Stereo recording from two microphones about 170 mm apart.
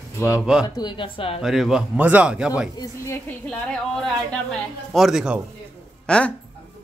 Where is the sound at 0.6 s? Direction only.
25° left (ahead or behind).